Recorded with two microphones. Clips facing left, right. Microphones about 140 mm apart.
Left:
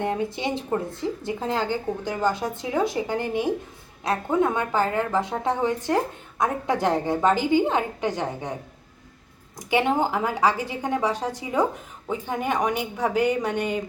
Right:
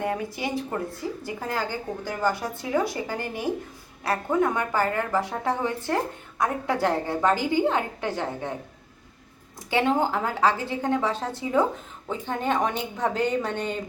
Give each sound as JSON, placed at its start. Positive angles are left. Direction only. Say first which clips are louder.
{"t": 0.0, "sound": "a woman's voice", "louder": "left 2 dB", "side_deg": 25}
{"t": 9.6, "sound": "a woman's voice", "louder": "left 1 dB", "side_deg": 15}